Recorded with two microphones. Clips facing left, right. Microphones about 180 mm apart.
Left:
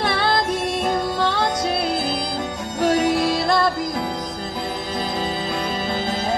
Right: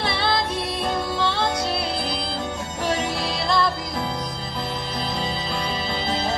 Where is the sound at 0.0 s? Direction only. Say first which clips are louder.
Left 3 dB; 45° left (ahead or behind).